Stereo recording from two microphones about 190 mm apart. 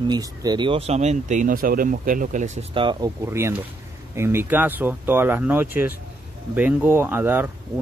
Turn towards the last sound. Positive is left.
turn(degrees=-10)  # may be behind; listen again after turning